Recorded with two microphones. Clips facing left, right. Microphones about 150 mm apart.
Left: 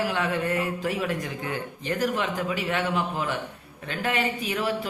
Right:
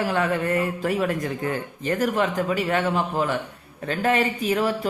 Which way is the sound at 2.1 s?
45° right (ahead or behind).